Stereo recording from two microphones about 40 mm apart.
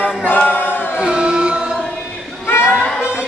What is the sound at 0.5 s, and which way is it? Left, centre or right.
Chant, left.